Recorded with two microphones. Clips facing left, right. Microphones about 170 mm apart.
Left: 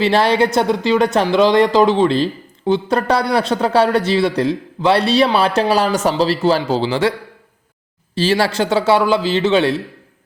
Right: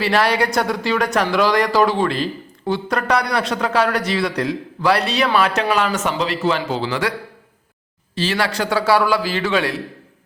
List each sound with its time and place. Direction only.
0.0 s speech: 25° left (ahead or behind)
8.1 s speech: 30° left (ahead or behind)